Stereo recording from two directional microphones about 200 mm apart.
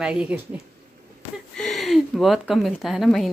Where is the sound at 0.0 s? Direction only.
5° right (ahead or behind).